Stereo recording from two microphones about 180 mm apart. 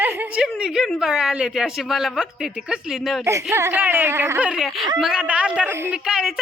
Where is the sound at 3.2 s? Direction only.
15° right (ahead or behind).